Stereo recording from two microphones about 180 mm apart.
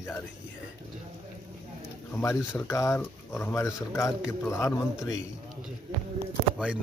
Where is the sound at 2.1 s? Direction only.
15° left (ahead or behind).